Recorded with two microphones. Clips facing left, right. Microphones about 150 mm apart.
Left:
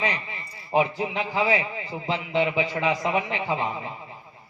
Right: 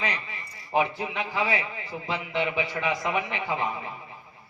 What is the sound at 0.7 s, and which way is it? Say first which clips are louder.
A man's voice: left 3 dB; 20° left (ahead or behind).